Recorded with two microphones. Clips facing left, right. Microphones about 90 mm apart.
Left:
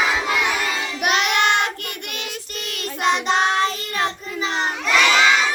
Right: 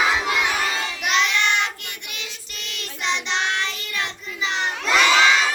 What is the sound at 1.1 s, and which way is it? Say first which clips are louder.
Child singing: left 3 dB; 55° left (ahead or behind).